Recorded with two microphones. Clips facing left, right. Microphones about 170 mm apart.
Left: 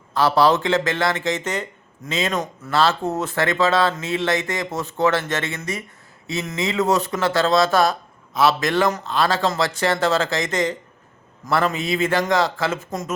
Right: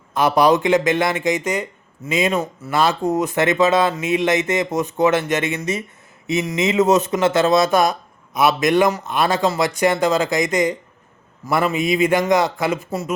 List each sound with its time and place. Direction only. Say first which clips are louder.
0.1 s speech: right 2 dB; 20° right (ahead or behind)